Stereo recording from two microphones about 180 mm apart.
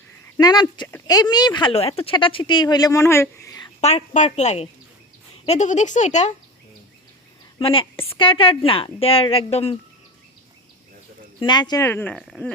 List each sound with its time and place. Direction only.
0.3 s speech: 25° left (ahead or behind)
3.8 s a woman's voice: 35° left (ahead or behind)
7.6 s a woman's voice: 30° left (ahead or behind)
11.3 s speech: 25° left (ahead or behind)
11.9 s speech: 10° left (ahead or behind)